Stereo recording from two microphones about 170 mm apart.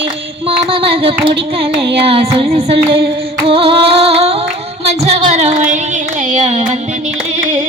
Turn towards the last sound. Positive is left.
turn(degrees=-45)  # may be behind; listen again after turning